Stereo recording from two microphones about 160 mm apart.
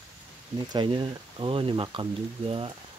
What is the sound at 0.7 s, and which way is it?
Speech, 30° right (ahead or behind).